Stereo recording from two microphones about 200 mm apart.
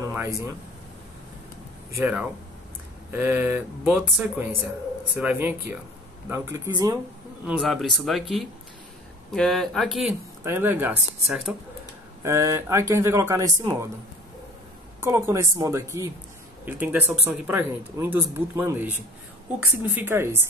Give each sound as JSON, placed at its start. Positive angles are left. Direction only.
{"t": 0.0, "sound": "a sound", "side_deg": -10}
{"t": 1.9, "sound": "speech", "side_deg": -10}
{"t": 7.4, "sound": "speech", "side_deg": 0}
{"t": 12.2, "sound": "speech", "side_deg": -15}
{"t": 15.0, "sound": "speech", "side_deg": -15}
{"t": 20.0, "sound": "speech", "side_deg": -10}